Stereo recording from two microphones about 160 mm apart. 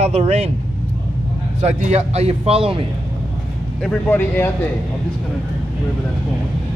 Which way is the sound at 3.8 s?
10° left (ahead or behind).